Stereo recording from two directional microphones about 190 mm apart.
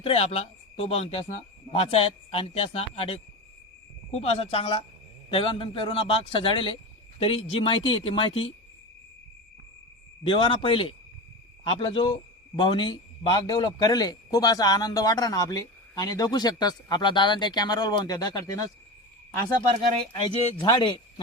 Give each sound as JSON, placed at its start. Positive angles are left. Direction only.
{"t": 0.0, "sound": "a man's voice", "side_deg": 30}
{"t": 10.2, "sound": "a man's voice", "side_deg": 25}
{"t": 20.2, "sound": "a man's voice", "side_deg": 25}